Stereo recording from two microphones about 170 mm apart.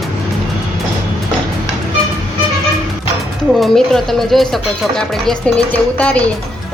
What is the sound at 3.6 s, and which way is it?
Speech, centre (ahead or behind).